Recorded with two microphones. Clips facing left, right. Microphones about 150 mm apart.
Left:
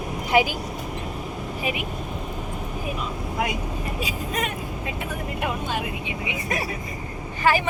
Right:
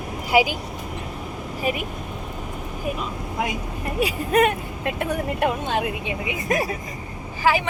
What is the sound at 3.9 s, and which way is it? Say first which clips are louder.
Speech: right 12 dB; 60° right (ahead or behind).